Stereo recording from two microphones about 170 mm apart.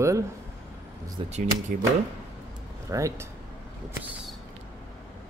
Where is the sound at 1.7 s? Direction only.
60° right (ahead or behind).